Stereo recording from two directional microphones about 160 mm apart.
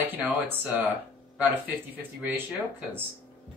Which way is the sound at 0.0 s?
10° right (ahead or behind).